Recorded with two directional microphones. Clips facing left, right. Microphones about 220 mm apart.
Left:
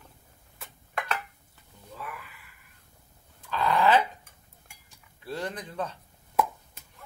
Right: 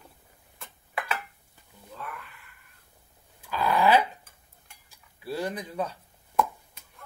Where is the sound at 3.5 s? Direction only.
10° right (ahead or behind).